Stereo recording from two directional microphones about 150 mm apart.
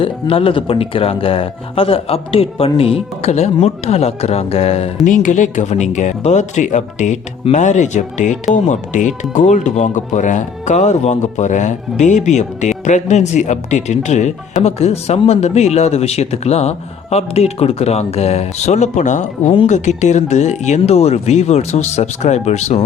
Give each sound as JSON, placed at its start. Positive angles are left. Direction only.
{"t": 0.0, "sound": "speech", "side_deg": 35}
{"t": 5.0, "sound": "speech", "side_deg": 55}